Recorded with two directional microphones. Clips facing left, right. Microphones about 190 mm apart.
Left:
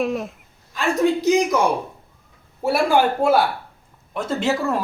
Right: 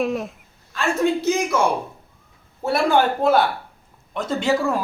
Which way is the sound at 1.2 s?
15° left (ahead or behind).